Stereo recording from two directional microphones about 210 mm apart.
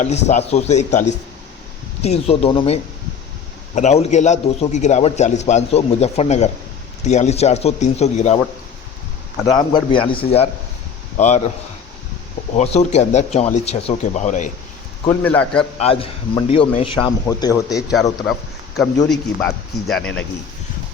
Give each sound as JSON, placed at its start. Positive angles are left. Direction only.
{"t": 0.0, "sound": "a man's voice", "side_deg": 35}
{"t": 9.4, "sound": "a man's voice", "side_deg": 15}
{"t": 12.5, "sound": "a man's voice", "side_deg": 30}
{"t": 15.2, "sound": "a man's voice", "side_deg": 10}
{"t": 15.8, "sound": "a man's voice", "side_deg": 25}
{"t": 19.0, "sound": "speech", "side_deg": 0}